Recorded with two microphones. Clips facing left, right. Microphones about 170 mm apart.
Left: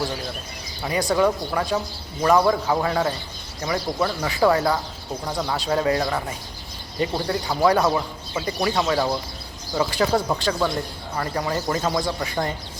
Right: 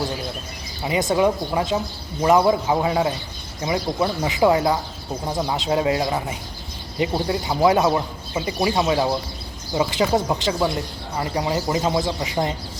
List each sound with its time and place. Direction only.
0.8 s speech: 20° right (ahead or behind)